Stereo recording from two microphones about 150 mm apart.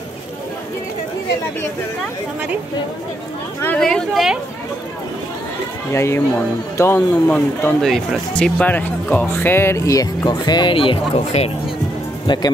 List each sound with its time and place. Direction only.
3.6 s speech: 5° left (ahead or behind)
5.9 s speech: 15° left (ahead or behind); by 11.5 s 45° left (ahead or behind)
12.3 s speech: 30° left (ahead or behind)